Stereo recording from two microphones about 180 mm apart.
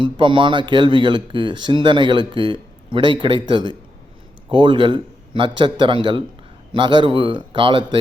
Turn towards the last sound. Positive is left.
turn(degrees=-25)  # may be behind; listen again after turning